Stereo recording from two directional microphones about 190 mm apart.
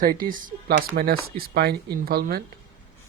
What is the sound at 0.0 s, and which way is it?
Speech, 45° right (ahead or behind).